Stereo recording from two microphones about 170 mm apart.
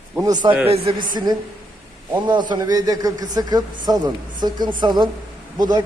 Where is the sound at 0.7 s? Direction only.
35° right (ahead or behind).